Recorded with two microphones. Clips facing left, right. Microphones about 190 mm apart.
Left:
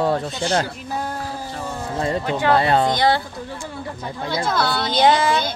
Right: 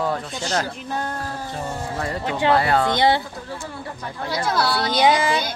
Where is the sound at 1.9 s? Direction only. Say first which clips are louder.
Left 6 dB; 25° left (ahead or behind).